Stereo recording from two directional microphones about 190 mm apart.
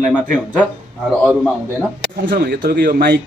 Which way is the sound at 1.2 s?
10° right (ahead or behind).